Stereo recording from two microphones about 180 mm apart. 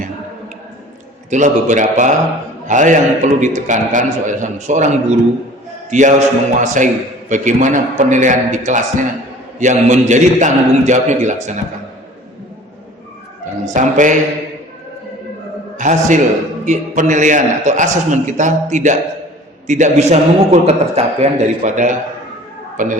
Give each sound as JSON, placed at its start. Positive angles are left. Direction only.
{"t": 1.3, "sound": "a man's voice", "side_deg": -45}
{"t": 13.4, "sound": "a man's voice", "side_deg": -45}
{"t": 15.8, "sound": "a man's voice", "side_deg": -45}